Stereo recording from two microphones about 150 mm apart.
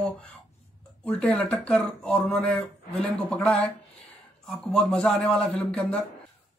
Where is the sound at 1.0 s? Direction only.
5° left (ahead or behind).